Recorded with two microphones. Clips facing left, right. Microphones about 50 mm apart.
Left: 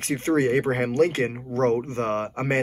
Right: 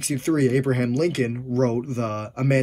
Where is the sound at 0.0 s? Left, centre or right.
Left.